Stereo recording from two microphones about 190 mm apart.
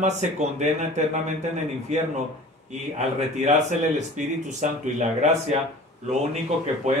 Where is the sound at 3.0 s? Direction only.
35° right (ahead or behind).